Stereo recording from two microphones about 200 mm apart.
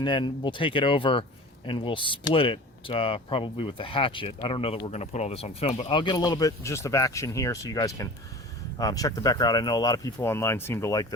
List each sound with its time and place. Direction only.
0.0 s speech: 25° left (ahead or behind)